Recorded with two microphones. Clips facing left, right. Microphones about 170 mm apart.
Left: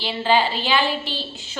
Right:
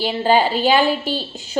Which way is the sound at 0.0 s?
45° right (ahead or behind).